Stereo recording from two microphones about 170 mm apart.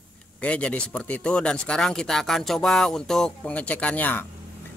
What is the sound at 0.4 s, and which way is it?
Speech, 5° left (ahead or behind).